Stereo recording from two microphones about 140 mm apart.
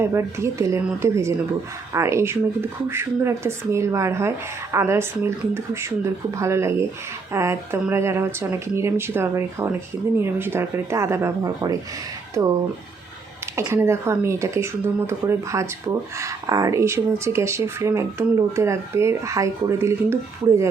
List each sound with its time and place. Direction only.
0.0 s speech: 20° right (ahead or behind)
13.6 s speech: 20° right (ahead or behind)